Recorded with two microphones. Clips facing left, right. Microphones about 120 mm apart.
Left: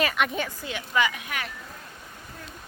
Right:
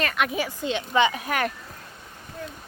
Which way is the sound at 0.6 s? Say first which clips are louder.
Right 5 dB; 25° right (ahead or behind).